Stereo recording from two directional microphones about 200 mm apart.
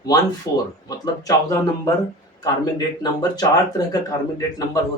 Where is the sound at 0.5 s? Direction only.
15° left (ahead or behind).